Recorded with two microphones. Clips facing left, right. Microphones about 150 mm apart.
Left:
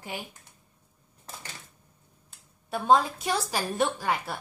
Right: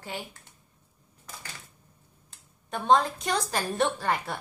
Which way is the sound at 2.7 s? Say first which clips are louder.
Even; 5° left (ahead or behind).